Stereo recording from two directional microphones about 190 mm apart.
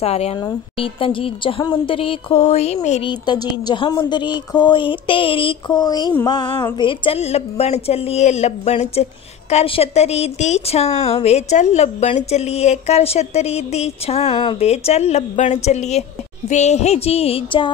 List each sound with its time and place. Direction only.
0.0 s a woman's voice: 35° left (ahead or behind)
3.1 s a woman's voice: 25° left (ahead or behind)